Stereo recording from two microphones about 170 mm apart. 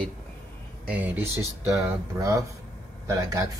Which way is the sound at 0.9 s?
10° right (ahead or behind).